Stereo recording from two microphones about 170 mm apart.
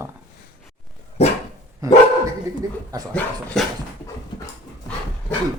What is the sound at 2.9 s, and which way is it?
Speech, 20° right (ahead or behind).